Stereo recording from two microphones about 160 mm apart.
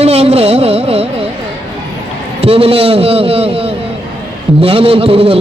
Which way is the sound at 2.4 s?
35° right (ahead or behind).